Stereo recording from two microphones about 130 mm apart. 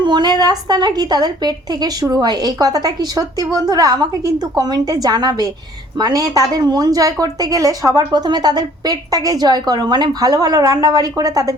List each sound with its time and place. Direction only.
0.0 s a woman's voice: 35° right (ahead or behind)